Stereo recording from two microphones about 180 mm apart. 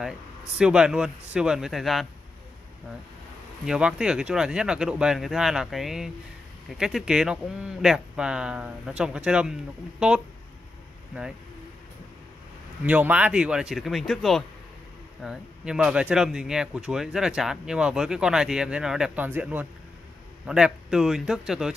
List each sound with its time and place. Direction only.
0.6 s speech: 5° right (ahead or behind)
3.6 s speech: 5° right (ahead or behind)
12.8 s speech: 10° right (ahead or behind)